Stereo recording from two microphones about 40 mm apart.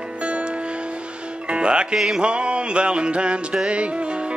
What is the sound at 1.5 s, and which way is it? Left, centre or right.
Music, right.